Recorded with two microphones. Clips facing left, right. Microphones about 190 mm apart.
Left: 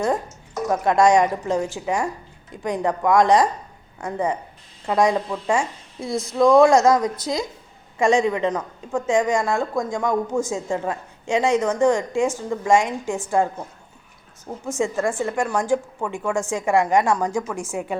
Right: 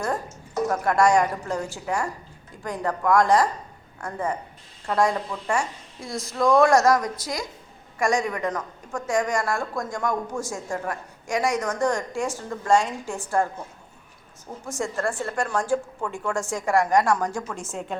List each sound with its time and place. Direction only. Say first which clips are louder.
0.7 s a woman's voice: left 4 dB; 20° left (ahead or behind)
6.1 s speech: left 7 dB; centre (ahead or behind)
6.7 s a woman's voice: left 3 dB; 20° left (ahead or behind)
14.8 s a woman's voice: left 5 dB; 15° left (ahead or behind)